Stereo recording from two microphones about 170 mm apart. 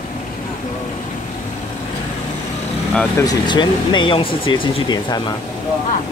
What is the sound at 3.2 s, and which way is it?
Speech, 25° left (ahead or behind).